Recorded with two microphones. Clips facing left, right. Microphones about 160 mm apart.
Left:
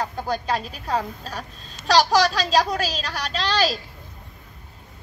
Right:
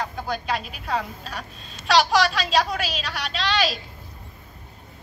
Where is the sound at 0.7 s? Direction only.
40° left (ahead or behind).